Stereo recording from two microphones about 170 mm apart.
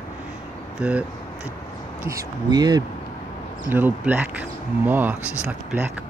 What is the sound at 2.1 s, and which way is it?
Speech, 20° right (ahead or behind).